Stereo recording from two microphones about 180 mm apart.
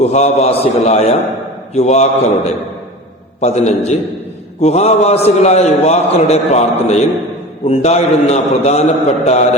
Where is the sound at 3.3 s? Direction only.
40° left (ahead or behind).